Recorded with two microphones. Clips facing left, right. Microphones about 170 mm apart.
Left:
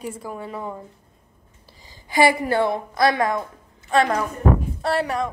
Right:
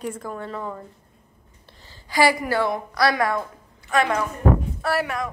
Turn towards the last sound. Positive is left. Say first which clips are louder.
# left 2 dB
turn(degrees=30)  # may be behind; listen again after turning